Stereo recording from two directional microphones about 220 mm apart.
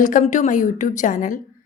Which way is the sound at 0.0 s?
35° left (ahead or behind).